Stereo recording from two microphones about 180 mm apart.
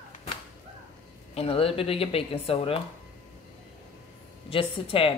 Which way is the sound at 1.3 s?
30° left (ahead or behind).